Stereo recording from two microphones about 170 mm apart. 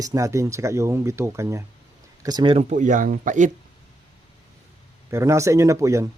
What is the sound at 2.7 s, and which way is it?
Mantra, 50° right (ahead or behind).